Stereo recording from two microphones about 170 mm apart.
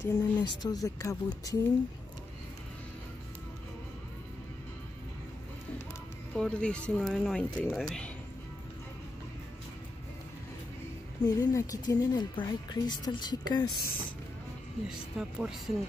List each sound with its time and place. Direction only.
0.0 s speech: 20° left (ahead or behind)
6.3 s speech: 5° left (ahead or behind)
11.2 s speech: 20° left (ahead or behind)
14.9 s speech: 5° right (ahead or behind)